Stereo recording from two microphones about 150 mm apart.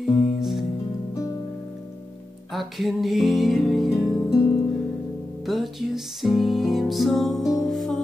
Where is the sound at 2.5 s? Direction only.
Centre (ahead or behind).